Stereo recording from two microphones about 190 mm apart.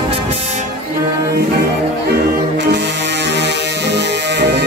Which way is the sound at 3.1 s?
65° right (ahead or behind).